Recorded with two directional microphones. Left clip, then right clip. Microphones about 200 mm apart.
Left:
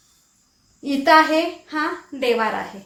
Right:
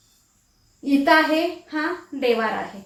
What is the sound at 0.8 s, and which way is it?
Speech, 40° left (ahead or behind).